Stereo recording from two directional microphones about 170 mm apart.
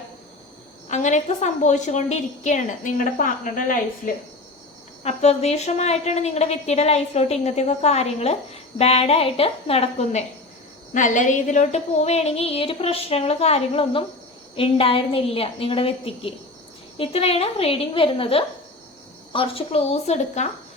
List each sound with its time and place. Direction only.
0.9 s a woman's voice: 45° left (ahead or behind)
5.0 s a woman's voice: 40° left (ahead or behind)